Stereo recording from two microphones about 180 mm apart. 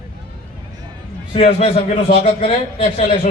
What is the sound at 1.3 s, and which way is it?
A man's voice, 30° left (ahead or behind).